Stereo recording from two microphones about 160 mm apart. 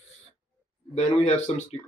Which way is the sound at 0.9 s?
40° left (ahead or behind).